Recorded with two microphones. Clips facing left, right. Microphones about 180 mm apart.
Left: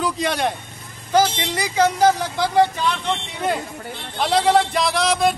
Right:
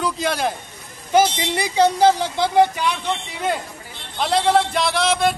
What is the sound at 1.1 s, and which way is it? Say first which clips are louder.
Speech: right 1 dB; 30° right (ahead or behind).